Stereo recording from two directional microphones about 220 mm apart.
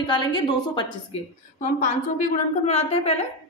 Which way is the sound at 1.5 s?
35° left (ahead or behind).